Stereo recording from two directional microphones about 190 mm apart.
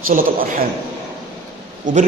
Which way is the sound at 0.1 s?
50° right (ahead or behind).